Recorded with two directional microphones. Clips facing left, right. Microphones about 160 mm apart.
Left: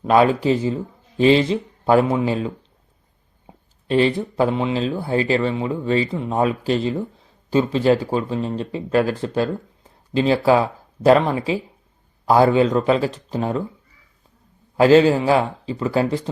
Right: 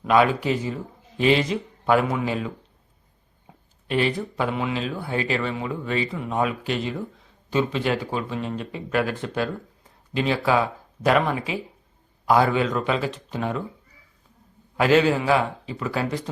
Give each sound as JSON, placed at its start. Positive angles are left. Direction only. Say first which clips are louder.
{"t": 0.0, "sound": "speech", "louder": "left 4 dB", "side_deg": 35}
{"t": 3.5, "sound": "a sound", "louder": "left 5 dB", "side_deg": 25}
{"t": 3.8, "sound": "speech", "louder": "left 6 dB", "side_deg": 30}
{"t": 14.8, "sound": "speech", "louder": "left 6 dB", "side_deg": 30}